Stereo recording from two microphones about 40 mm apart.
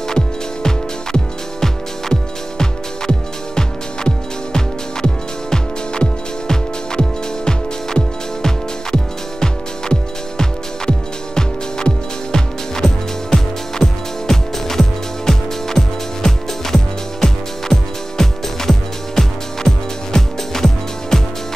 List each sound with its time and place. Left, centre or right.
0.1 s music: centre